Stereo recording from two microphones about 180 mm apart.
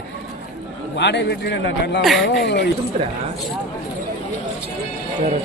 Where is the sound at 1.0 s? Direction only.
75° left (ahead or behind).